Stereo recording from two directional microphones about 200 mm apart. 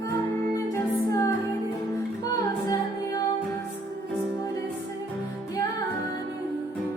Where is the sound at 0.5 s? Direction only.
15° left (ahead or behind).